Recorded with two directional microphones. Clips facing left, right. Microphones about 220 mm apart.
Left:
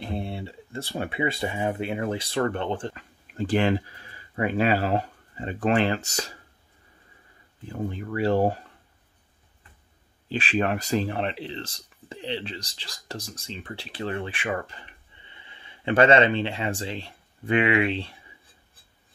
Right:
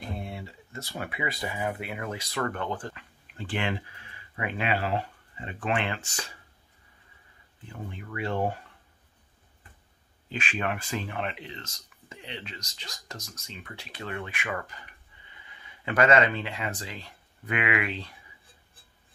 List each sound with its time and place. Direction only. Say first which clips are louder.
0.0 s speech: left 5 dB; 30° left (ahead or behind)
2.9 s speech: left 3 dB; 40° left (ahead or behind)
7.6 s speech: left 9 dB; 35° left (ahead or behind)
10.3 s speech: left 6 dB; 35° left (ahead or behind)